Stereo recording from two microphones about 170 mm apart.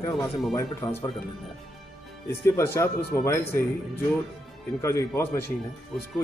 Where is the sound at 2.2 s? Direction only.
15° left (ahead or behind).